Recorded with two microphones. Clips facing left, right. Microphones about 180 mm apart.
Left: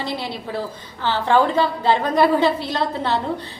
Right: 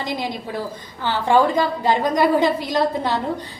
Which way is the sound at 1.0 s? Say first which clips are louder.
Right 1 dB; 15° right (ahead or behind).